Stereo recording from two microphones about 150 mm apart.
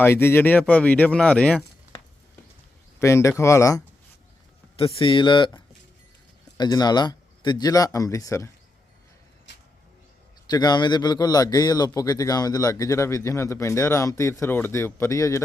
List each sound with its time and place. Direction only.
0.0 s speech: 15° left (ahead or behind)
3.0 s a man's voice: 20° left (ahead or behind)
4.8 s a man's voice: 40° left (ahead or behind); by 8.4 s 20° left (ahead or behind)
10.4 s a man's voice: 25° left (ahead or behind)